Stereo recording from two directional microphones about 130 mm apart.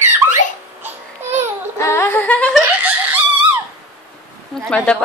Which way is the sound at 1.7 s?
20° left (ahead or behind).